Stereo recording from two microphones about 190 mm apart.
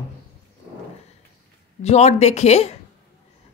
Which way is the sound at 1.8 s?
35° left (ahead or behind).